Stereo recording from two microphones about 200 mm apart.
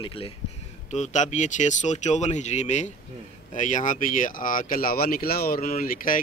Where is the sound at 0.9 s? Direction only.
35° left (ahead or behind).